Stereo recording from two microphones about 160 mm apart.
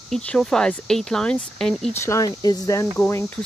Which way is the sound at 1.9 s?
20° left (ahead or behind).